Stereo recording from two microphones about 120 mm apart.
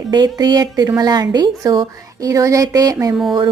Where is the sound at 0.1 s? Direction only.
35° right (ahead or behind).